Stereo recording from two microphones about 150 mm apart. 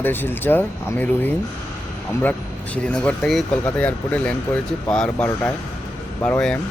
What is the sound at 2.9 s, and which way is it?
Speech, 5° left (ahead or behind).